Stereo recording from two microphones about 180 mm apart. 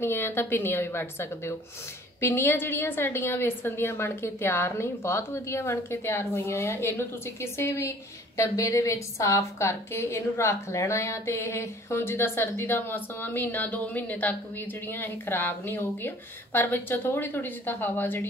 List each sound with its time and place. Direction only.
0.0 s a woman's voice: 10° left (ahead or behind)